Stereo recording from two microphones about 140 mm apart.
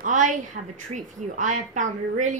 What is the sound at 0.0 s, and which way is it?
A woman's voice, 65° right (ahead or behind).